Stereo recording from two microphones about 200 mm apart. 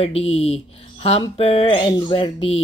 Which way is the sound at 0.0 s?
30° left (ahead or behind).